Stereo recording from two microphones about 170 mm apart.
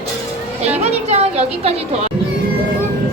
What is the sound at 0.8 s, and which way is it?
A woman's voice, 40° right (ahead or behind).